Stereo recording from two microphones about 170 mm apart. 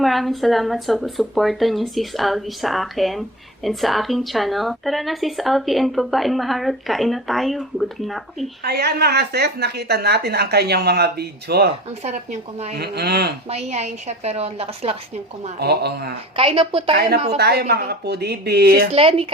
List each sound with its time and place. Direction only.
0.0 s speech: centre (ahead or behind)
8.6 s a woman's voice: 70° right (ahead or behind)
12.0 s a woman's voice: 40° right (ahead or behind)
12.7 s a woman's voice: 70° right (ahead or behind)
13.5 s a woman's voice: 40° right (ahead or behind)
15.5 s a woman's voice: 70° right (ahead or behind)
16.3 s a woman's voice: 35° right (ahead or behind)
17.3 s a woman's voice: 70° right (ahead or behind)
18.9 s a woman's voice: 35° right (ahead or behind)